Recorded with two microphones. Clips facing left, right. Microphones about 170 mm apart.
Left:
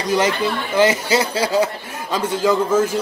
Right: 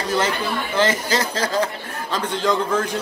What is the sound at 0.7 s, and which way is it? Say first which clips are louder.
Speech: left 4 dB; 10° left (ahead or behind).